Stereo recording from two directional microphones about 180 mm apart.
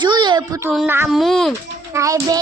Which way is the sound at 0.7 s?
10° right (ahead or behind).